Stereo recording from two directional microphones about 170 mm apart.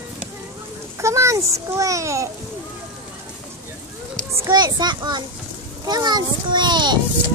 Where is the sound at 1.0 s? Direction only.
15° right (ahead or behind).